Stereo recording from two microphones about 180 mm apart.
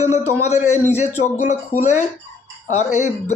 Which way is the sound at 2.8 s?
40° left (ahead or behind).